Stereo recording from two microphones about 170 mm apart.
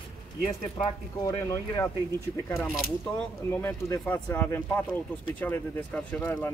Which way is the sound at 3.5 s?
15° left (ahead or behind).